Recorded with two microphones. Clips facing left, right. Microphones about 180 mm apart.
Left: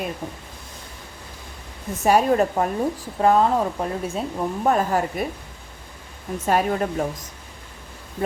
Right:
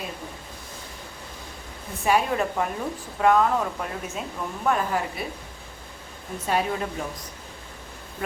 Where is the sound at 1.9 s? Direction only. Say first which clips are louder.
Left 5 dB; 40° left (ahead or behind).